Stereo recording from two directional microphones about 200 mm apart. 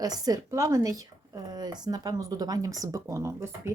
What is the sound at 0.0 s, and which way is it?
A woman's voice, 20° right (ahead or behind).